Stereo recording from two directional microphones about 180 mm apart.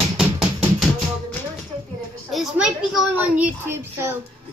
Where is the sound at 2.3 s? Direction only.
Centre (ahead or behind).